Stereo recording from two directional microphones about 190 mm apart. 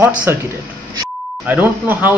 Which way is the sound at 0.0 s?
10° right (ahead or behind).